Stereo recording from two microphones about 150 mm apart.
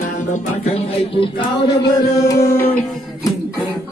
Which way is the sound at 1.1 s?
30° left (ahead or behind).